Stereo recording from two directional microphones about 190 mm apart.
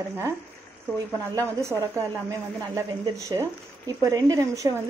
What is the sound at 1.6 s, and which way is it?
A woman's voice, 15° right (ahead or behind).